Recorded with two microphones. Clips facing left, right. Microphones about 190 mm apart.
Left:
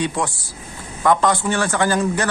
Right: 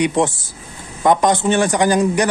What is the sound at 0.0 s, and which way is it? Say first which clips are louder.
A man's voice: right 6 dB; 20° right (ahead or behind).